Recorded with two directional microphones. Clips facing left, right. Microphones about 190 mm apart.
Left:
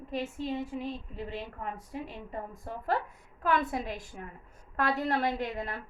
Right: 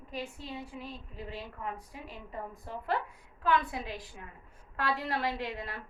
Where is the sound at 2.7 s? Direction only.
45° left (ahead or behind).